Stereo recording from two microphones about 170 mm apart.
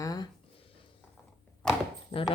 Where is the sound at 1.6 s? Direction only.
5° left (ahead or behind).